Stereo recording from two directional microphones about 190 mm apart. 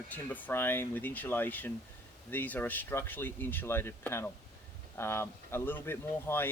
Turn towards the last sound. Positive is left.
turn(degrees=10)  # may be behind; listen again after turning